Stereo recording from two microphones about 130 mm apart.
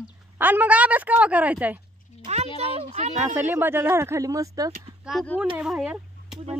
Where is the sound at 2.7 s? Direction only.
55° right (ahead or behind).